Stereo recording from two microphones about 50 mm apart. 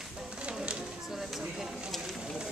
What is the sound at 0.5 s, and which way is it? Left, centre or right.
Music, centre.